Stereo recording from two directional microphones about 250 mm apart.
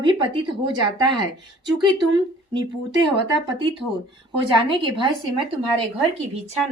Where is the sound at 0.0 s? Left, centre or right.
Centre.